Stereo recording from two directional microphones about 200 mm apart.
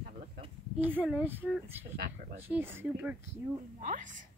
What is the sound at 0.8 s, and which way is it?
Speech, 10° right (ahead or behind).